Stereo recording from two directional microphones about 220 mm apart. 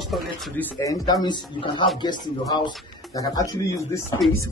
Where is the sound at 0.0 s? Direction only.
Centre (ahead or behind).